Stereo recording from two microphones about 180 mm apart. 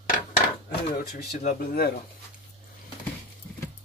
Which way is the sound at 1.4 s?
60° left (ahead or behind).